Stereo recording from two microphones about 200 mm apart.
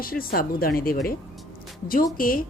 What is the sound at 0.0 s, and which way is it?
Speech, 45° left (ahead or behind).